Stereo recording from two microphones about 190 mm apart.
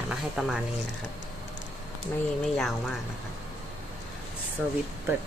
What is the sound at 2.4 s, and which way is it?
Speech, centre (ahead or behind).